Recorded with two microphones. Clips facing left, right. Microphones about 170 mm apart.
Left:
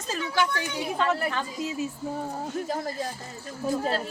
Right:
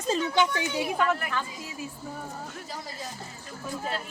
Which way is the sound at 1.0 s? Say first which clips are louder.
Left 5 dB; 25° left (ahead or behind).